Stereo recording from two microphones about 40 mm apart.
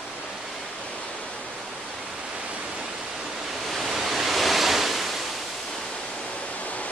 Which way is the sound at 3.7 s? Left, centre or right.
Centre.